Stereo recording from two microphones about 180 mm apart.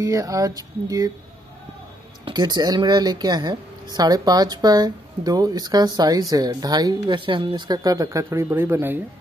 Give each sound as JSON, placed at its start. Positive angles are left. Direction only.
{"t": 0.0, "sound": "speech", "side_deg": -20}
{"t": 2.2, "sound": "speech", "side_deg": -25}